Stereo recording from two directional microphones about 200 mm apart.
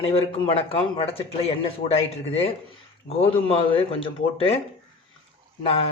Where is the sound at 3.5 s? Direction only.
30° left (ahead or behind).